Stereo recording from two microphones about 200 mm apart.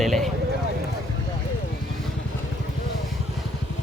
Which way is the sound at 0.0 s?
Centre (ahead or behind).